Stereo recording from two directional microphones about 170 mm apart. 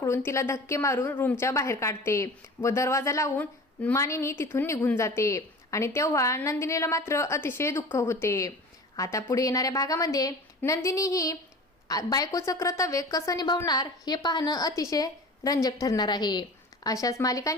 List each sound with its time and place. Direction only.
0.0 s a woman's voice: 15° left (ahead or behind)